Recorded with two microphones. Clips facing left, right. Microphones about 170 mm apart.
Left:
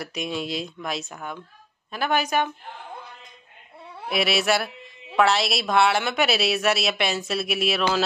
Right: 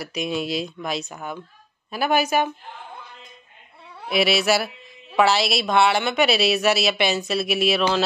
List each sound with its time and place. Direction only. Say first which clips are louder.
0.0 s a woman's voice: right 3 dB; centre (ahead or behind)
4.1 s a woman's voice: right 3 dB; centre (ahead or behind)